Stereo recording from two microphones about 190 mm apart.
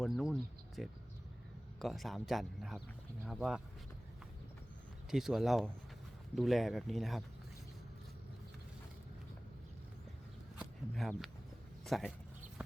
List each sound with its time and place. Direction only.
0.0 s a sound: centre (ahead or behind)
0.8 s speech: centre (ahead or behind)
5.1 s speech: centre (ahead or behind)
10.6 s speech: centre (ahead or behind)